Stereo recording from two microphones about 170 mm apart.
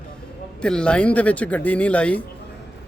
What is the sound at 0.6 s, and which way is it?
Speech, 5° left (ahead or behind).